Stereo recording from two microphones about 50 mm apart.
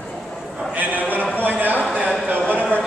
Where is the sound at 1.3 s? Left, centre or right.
Right.